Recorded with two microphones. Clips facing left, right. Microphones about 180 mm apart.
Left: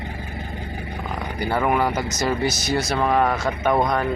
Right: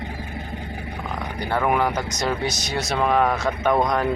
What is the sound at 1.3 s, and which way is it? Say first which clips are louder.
Speech: left 1 dB; 5° left (ahead or behind).